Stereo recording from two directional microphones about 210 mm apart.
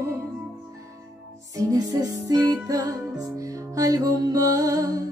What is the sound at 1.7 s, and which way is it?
Music, 15° right (ahead or behind).